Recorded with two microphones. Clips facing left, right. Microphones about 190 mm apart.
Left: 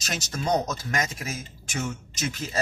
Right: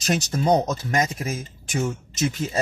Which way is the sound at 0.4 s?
30° right (ahead or behind).